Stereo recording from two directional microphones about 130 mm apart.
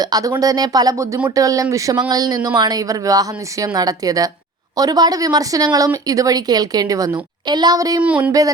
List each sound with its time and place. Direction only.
0.0 s speech: 30° right (ahead or behind)
8.0 s speech: 10° right (ahead or behind)
8.3 s speech: 30° right (ahead or behind)